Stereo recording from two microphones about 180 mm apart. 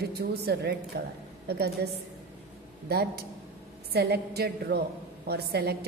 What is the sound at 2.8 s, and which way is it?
A woman's voice, 60° right (ahead or behind).